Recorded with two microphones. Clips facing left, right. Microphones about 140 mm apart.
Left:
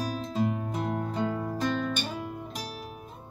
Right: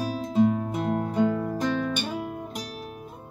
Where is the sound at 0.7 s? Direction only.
15° right (ahead or behind).